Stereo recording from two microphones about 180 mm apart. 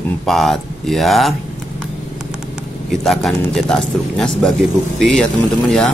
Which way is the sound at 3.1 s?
5° left (ahead or behind).